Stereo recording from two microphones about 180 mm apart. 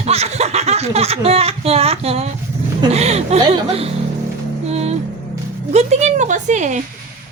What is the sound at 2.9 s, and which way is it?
Music, 35° right (ahead or behind).